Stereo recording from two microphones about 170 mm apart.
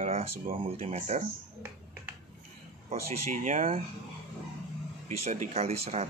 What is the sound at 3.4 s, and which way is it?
Speech, 50° right (ahead or behind).